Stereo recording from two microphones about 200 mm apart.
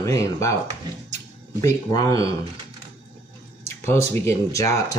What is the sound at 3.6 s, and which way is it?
Speech, 15° left (ahead or behind).